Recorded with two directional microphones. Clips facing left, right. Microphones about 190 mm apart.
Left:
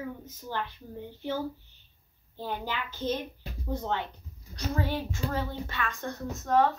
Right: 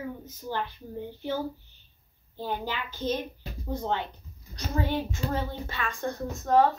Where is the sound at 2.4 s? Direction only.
15° right (ahead or behind).